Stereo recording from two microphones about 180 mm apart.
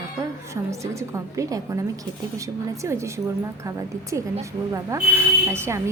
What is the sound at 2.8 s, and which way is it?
Speech, 15° right (ahead or behind).